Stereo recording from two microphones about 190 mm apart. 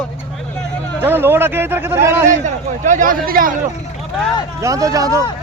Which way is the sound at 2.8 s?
40° right (ahead or behind).